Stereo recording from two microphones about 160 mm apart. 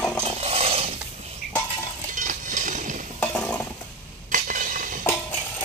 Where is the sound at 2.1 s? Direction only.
55° right (ahead or behind).